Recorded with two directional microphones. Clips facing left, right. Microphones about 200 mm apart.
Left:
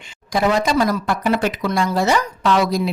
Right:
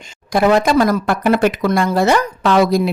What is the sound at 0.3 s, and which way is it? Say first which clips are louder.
Speech: right 5 dB; 60° right (ahead or behind).